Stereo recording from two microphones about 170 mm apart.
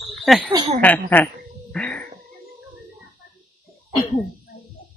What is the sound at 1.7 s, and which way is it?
Cat, 5° left (ahead or behind).